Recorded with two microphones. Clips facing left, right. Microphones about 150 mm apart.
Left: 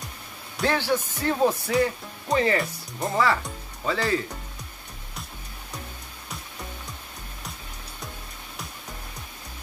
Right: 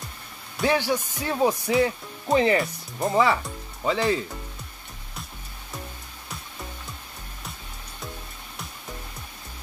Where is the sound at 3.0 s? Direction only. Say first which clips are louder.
Right 2 dB; 20° right (ahead or behind).